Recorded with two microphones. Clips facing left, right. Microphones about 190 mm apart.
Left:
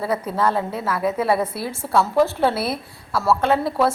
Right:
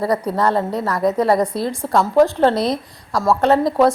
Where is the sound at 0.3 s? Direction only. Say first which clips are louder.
Right 3 dB; 10° left (ahead or behind).